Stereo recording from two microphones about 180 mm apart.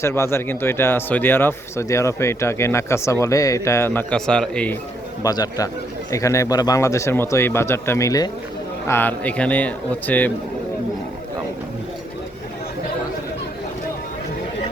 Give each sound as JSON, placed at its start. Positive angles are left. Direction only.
{"t": 0.0, "sound": "speech", "side_deg": 15}
{"t": 5.2, "sound": "speech", "side_deg": 20}